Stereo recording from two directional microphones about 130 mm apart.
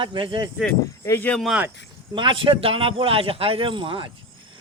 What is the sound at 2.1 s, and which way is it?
A man's voice, 40° right (ahead or behind).